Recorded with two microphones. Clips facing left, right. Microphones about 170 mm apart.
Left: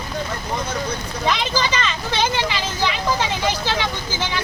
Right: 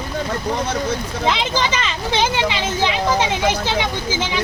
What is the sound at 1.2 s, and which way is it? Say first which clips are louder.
Speech: right 1 dB; 20° right (ahead or behind).